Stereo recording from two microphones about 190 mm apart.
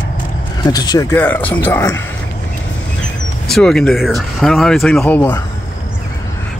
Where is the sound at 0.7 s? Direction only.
20° left (ahead or behind).